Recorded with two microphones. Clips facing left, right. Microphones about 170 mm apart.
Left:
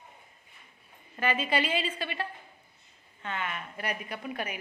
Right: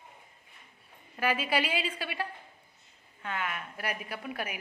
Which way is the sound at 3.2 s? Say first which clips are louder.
Even; 5° right (ahead or behind).